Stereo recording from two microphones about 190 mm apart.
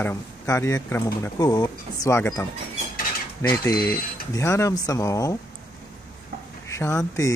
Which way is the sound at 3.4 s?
15° left (ahead or behind).